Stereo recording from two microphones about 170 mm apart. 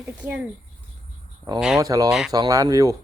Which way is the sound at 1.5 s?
25° right (ahead or behind).